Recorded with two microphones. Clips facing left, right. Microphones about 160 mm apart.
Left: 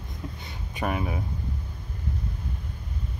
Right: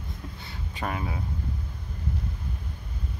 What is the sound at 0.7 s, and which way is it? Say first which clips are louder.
Speech: left 4 dB; 15° left (ahead or behind).